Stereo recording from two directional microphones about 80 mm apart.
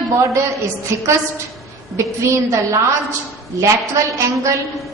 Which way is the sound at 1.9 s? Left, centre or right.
Right.